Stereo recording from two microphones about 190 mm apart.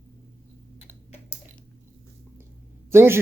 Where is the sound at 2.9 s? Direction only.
15° right (ahead or behind).